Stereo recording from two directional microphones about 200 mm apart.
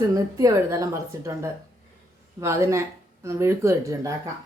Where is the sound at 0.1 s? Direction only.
15° right (ahead or behind).